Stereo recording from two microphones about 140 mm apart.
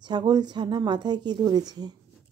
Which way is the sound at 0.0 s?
30° right (ahead or behind).